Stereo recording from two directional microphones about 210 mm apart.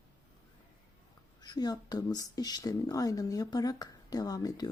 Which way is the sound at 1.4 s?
20° left (ahead or behind).